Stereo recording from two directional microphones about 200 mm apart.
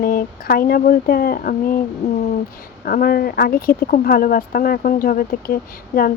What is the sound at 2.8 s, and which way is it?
Speech, 45° left (ahead or behind).